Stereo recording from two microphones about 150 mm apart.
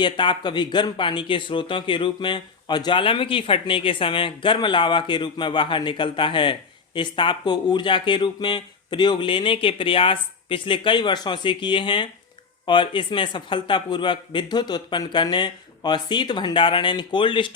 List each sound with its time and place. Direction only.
0.0 s speech: 30° left (ahead or behind)